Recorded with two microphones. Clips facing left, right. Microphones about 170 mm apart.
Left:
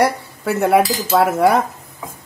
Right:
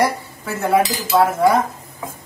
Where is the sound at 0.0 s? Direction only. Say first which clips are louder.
Left 2 dB; 65° left (ahead or behind).